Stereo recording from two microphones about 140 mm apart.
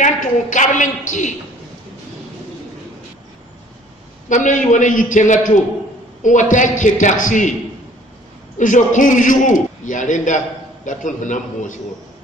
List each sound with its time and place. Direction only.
0.0 s a man's voice: 65° left (ahead or behind)
4.3 s a man's voice: 65° left (ahead or behind)
8.5 s a man's voice: 65° left (ahead or behind)